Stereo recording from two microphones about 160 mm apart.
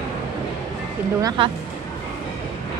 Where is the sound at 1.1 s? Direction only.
30° right (ahead or behind).